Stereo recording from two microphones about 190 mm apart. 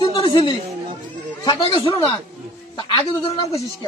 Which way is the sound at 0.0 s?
25° left (ahead or behind).